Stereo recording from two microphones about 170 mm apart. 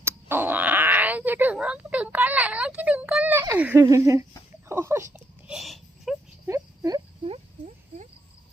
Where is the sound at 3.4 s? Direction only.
10° right (ahead or behind).